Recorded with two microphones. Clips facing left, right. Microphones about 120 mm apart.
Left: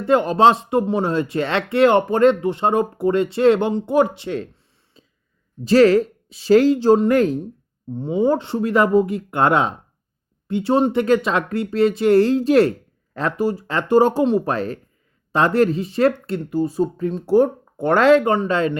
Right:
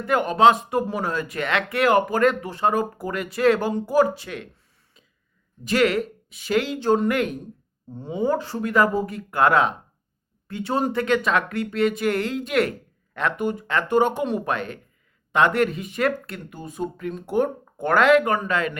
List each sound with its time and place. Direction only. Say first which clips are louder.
0.0 s speech: left 3 dB; 30° left (ahead or behind)
4.9 s a sound: left 7 dB; 30° left (ahead or behind)
5.6 s speech: left 8 dB; 30° left (ahead or behind)